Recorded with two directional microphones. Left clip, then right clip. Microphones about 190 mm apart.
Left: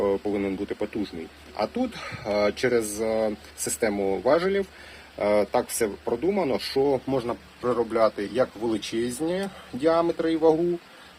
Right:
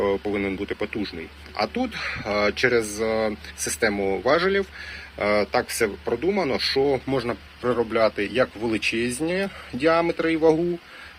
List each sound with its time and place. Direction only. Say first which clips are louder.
0.0 s speech: right 1 dB; centre (ahead or behind)
7.2 s speech: right 2 dB; 15° right (ahead or behind)